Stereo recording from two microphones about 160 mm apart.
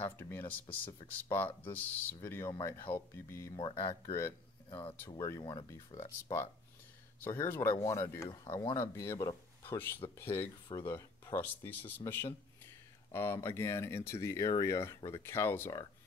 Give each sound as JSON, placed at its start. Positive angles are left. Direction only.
{"t": 0.0, "sound": "speech", "side_deg": 15}
{"t": 4.6, "sound": "speech", "side_deg": 35}
{"t": 5.1, "sound": "speech", "side_deg": 20}
{"t": 5.4, "sound": "speech", "side_deg": 30}